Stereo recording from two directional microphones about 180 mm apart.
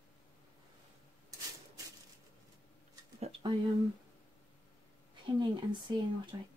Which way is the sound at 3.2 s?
30° right (ahead or behind).